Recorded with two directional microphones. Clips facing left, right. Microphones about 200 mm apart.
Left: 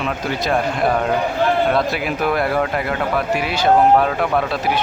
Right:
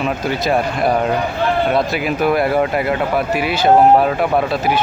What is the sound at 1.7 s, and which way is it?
Speech, centre (ahead or behind).